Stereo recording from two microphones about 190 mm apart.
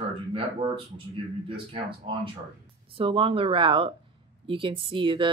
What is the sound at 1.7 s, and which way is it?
Speech, 25° right (ahead or behind).